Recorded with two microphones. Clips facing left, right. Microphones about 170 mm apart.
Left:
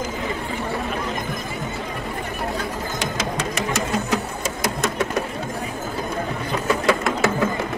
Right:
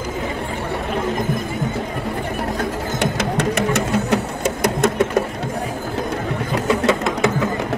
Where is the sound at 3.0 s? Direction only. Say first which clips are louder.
Right 6 dB; 60° right (ahead or behind).